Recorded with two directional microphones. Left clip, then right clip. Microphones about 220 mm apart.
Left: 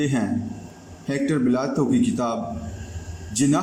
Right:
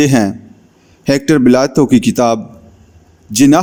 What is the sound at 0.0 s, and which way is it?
A man's voice, 50° right (ahead or behind).